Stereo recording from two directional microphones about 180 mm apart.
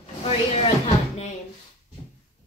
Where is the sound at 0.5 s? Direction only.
35° left (ahead or behind).